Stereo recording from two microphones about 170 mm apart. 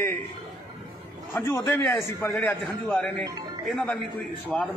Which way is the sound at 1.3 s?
15° left (ahead or behind).